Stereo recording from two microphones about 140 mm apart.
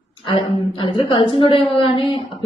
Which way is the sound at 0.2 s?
40° left (ahead or behind).